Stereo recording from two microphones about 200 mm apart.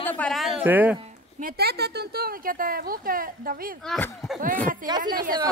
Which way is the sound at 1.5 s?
50° right (ahead or behind).